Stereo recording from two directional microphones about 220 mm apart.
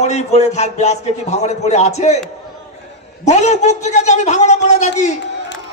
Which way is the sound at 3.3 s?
30° left (ahead or behind).